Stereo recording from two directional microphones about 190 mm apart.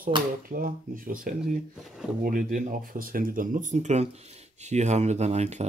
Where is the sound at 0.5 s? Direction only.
50° right (ahead or behind).